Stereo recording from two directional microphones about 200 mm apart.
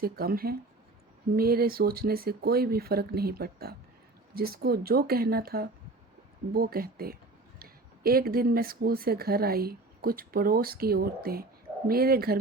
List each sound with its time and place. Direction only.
0.0 s speech: 45° right (ahead or behind)